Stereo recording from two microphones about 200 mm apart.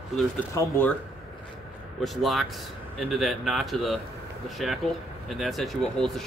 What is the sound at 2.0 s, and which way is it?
Speech, centre (ahead or behind).